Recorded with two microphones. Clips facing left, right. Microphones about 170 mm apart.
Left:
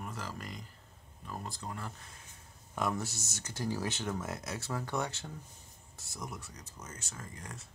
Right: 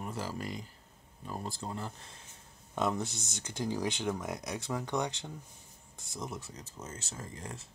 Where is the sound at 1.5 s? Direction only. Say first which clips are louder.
Right 3 dB; 30° right (ahead or behind).